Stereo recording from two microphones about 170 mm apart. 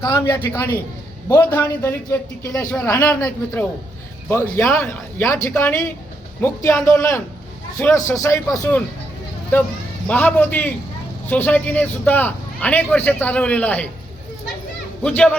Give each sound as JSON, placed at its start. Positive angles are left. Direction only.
{"t": 0.0, "sound": "a man's voice", "side_deg": 15}
{"t": 15.0, "sound": "a man's voice", "side_deg": 5}